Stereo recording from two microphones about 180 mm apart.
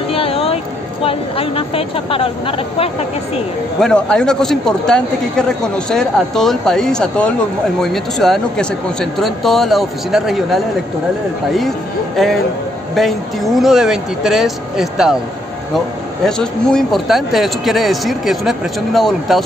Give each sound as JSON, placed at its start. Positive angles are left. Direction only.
{"t": 0.1, "sound": "a sound", "side_deg": 30}
{"t": 1.0, "sound": "speech", "side_deg": 30}
{"t": 3.8, "sound": "speech", "side_deg": 5}
{"t": 12.9, "sound": "speech", "side_deg": 0}
{"t": 16.3, "sound": "speech", "side_deg": 5}